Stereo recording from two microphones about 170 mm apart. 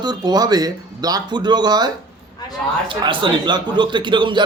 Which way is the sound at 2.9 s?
30° right (ahead or behind).